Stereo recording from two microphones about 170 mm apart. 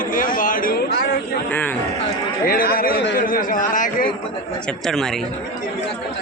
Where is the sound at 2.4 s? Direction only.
60° left (ahead or behind).